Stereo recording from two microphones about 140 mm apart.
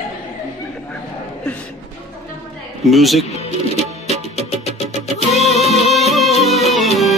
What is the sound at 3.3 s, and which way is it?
Music, 50° left (ahead or behind).